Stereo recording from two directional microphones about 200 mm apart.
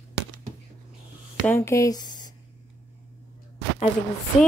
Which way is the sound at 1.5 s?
15° left (ahead or behind).